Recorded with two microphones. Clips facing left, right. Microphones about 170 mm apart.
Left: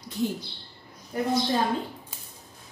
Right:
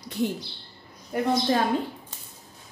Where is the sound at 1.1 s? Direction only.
65° right (ahead or behind).